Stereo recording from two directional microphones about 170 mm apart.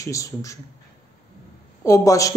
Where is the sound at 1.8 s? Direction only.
20° left (ahead or behind).